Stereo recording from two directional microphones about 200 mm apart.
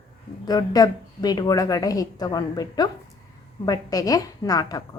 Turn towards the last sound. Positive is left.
turn(degrees=20)  # may be behind; listen again after turning